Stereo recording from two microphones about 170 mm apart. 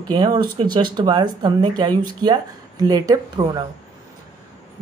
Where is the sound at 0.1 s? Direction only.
25° right (ahead or behind).